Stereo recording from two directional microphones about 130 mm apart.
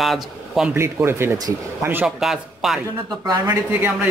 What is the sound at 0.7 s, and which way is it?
Speech, 20° right (ahead or behind).